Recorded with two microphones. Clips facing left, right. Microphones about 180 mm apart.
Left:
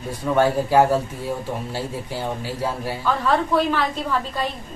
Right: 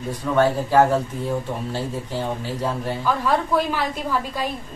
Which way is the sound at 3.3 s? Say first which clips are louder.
Left 2 dB; 10° right (ahead or behind).